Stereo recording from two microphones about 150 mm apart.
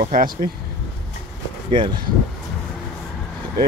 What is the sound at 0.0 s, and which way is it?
Speech, 65° right (ahead or behind).